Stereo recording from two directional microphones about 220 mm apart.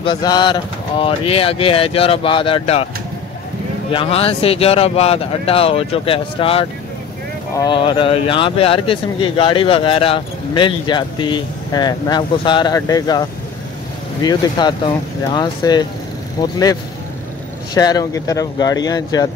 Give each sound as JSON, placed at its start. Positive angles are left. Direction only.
{"t": 0.0, "sound": "speech", "side_deg": 20}
{"t": 3.9, "sound": "speech", "side_deg": 25}
{"t": 14.2, "sound": "speech", "side_deg": 20}
{"t": 17.7, "sound": "speech", "side_deg": 15}